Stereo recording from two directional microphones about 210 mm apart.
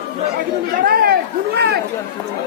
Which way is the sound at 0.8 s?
45° right (ahead or behind).